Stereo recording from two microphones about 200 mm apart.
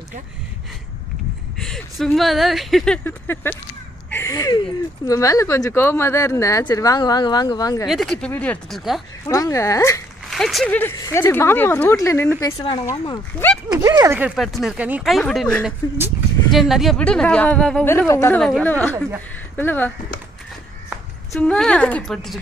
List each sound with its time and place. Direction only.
1.6 s speech: 5° left (ahead or behind)
4.1 s a sound: 15° left (ahead or behind)
5.0 s speech: 15° left (ahead or behind)
7.8 s speech: centre (ahead or behind)
9.3 s speech: 15° left (ahead or behind)
10.3 s speech: centre (ahead or behind); by 13.5 s 20° left (ahead or behind)
13.7 s speech: 15° right (ahead or behind)
14.3 s speech: centre (ahead or behind)
21.3 s speech: 5° left (ahead or behind)